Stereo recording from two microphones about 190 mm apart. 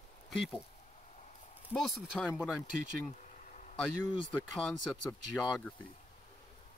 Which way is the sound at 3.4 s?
40° left (ahead or behind).